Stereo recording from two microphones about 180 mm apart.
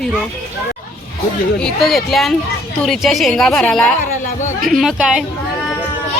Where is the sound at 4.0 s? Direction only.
45° left (ahead or behind).